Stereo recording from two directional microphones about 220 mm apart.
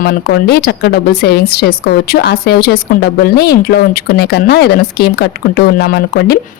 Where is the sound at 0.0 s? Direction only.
45° left (ahead or behind).